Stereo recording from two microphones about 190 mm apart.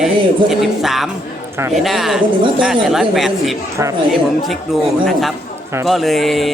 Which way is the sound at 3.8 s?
15° right (ahead or behind).